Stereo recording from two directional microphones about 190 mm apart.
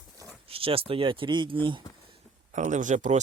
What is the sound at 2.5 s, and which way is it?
Speech, 40° right (ahead or behind).